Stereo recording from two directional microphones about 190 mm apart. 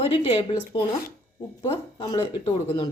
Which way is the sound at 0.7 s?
25° left (ahead or behind).